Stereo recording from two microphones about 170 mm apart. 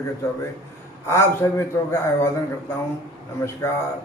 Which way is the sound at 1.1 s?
15° left (ahead or behind).